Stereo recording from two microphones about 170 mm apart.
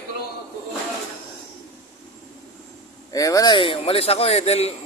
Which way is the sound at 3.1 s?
20° left (ahead or behind).